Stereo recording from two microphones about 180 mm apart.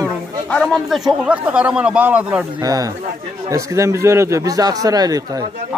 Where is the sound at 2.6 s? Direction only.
20° right (ahead or behind).